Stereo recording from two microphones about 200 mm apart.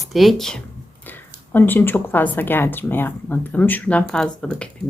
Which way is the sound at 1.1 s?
10° left (ahead or behind).